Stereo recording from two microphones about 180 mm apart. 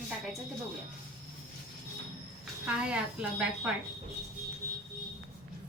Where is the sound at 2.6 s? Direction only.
5° right (ahead or behind).